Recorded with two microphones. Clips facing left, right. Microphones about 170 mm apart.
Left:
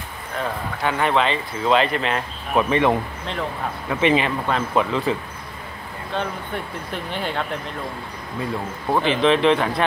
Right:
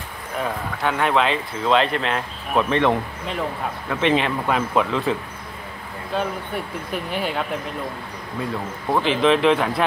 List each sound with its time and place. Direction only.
0.4 s speech: centre (ahead or behind)
6.1 s speech: 10° right (ahead or behind)
8.9 s speech: centre (ahead or behind)